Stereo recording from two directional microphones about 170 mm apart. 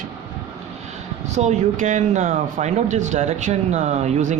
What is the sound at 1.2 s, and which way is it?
Speech, 45° right (ahead or behind).